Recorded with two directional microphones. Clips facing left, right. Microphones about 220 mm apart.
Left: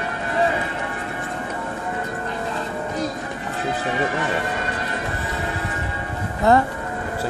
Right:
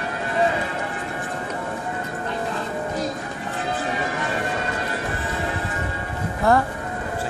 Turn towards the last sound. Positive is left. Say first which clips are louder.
# left 2 dB
turn(degrees=20)  # may be behind; listen again after turning